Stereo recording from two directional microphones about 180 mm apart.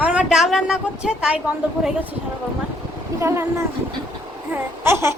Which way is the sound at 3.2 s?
15° right (ahead or behind).